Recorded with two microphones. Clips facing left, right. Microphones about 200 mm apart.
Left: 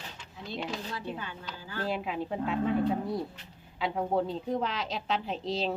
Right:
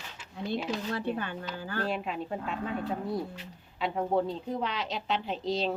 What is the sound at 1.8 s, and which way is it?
A woman's voice, centre (ahead or behind).